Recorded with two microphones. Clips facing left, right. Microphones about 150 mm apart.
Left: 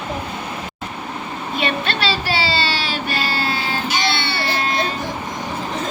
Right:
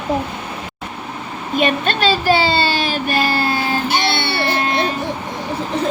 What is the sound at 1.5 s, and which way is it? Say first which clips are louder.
Child singing: right 5 dB; 50° right (ahead or behind).